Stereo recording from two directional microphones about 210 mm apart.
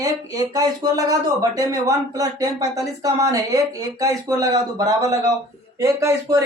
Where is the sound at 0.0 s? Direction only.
15° right (ahead or behind).